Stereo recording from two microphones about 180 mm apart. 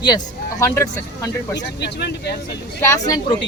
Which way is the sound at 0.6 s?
15° left (ahead or behind).